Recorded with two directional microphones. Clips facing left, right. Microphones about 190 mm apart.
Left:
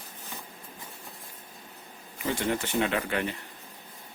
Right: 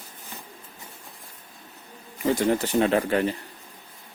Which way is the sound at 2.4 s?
40° right (ahead or behind).